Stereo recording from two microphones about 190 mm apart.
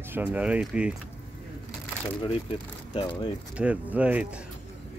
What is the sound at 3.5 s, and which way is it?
Speech, 5° right (ahead or behind).